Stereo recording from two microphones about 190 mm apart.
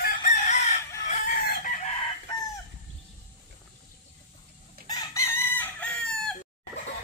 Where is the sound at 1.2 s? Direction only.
50° left (ahead or behind).